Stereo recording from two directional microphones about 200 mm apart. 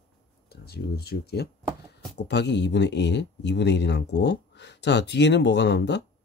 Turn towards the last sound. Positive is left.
turn(degrees=60)  # may be behind; listen again after turning